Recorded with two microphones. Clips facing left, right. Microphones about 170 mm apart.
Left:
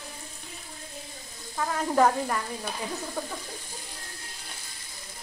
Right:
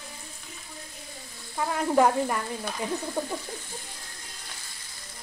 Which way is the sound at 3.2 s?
20° right (ahead or behind).